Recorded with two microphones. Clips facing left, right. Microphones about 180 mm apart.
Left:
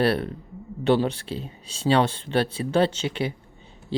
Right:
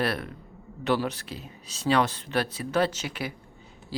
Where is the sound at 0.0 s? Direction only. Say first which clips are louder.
Left 6 dB; 30° left (ahead or behind).